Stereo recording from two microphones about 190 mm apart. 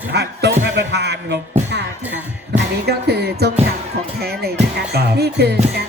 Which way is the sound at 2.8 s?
60° right (ahead or behind).